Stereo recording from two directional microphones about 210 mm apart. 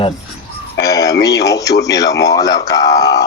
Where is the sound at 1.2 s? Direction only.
15° left (ahead or behind).